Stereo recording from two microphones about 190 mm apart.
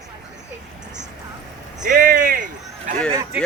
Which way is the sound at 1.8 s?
45° right (ahead or behind).